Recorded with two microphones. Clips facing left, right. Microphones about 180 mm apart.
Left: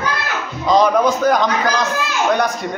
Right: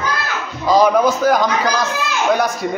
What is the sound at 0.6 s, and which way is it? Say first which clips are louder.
A man's voice: right 1 dB; 5° right (ahead or behind).